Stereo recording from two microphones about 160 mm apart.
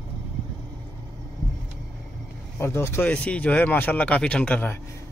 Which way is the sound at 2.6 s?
15° left (ahead or behind).